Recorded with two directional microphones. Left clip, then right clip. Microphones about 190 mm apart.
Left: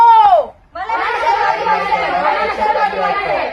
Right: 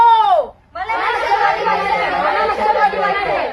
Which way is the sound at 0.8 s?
Centre (ahead or behind).